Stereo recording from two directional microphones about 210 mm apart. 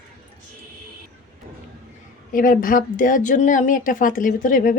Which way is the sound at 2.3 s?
40° left (ahead or behind).